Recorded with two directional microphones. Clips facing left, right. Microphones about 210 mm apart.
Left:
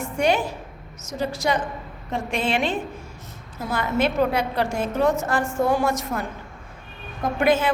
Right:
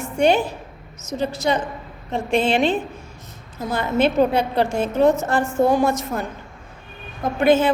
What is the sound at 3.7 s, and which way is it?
A woman's voice, 25° right (ahead or behind).